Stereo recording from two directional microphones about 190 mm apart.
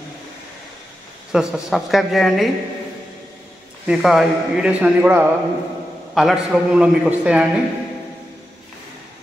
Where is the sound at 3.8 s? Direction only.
5° right (ahead or behind).